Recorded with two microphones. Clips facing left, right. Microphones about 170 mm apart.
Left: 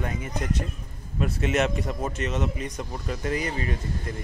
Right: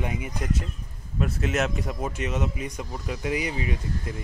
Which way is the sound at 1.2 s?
Centre (ahead or behind).